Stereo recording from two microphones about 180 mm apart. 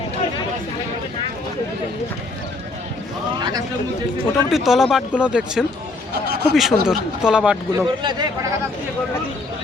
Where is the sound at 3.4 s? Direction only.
20° right (ahead or behind).